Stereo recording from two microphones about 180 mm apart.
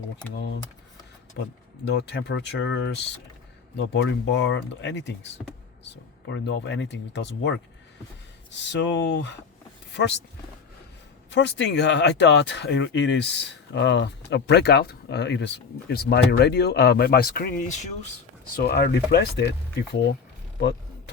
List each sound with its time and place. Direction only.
1.8 s speech: 70° left (ahead or behind)
8.5 s speech: 80° left
11.3 s speech: 75° left (ahead or behind); by 18.1 s 40° left (ahead or behind)
18.5 s speech: 60° left (ahead or behind)